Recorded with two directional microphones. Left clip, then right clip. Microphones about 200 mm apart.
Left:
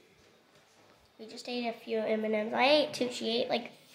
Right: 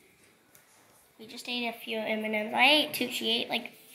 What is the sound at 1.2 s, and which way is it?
A woman's voice, 5° left (ahead or behind).